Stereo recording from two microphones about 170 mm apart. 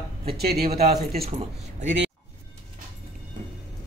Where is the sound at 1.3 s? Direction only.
40° right (ahead or behind).